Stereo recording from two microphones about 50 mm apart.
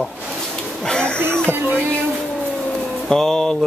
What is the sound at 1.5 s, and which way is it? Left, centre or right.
Music, right.